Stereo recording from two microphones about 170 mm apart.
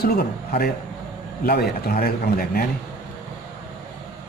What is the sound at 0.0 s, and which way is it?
A man's voice, 65° left (ahead or behind).